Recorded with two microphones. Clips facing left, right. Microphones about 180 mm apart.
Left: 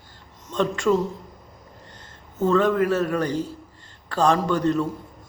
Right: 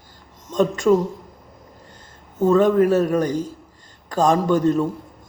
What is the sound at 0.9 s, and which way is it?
Speech, 15° right (ahead or behind).